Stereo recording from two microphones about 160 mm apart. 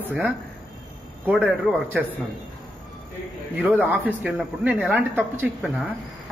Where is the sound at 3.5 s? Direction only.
10° right (ahead or behind).